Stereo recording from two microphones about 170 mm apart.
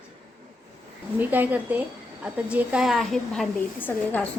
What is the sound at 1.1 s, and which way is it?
A child's voice, 10° right (ahead or behind).